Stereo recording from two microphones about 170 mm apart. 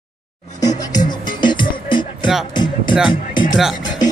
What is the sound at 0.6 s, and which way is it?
Music, 20° left (ahead or behind).